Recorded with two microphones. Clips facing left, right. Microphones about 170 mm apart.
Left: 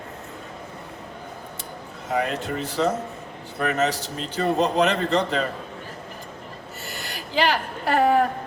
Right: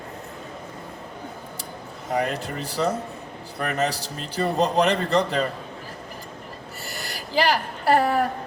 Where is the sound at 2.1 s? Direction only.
35° right (ahead or behind).